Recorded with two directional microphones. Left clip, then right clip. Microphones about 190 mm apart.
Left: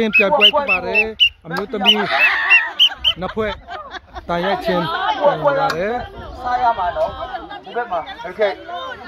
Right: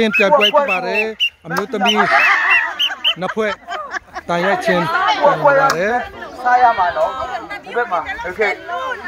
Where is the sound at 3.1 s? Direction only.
Centre (ahead or behind).